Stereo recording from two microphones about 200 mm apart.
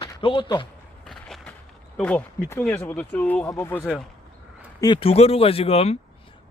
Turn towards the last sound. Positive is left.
turn(degrees=30)  # may be behind; listen again after turning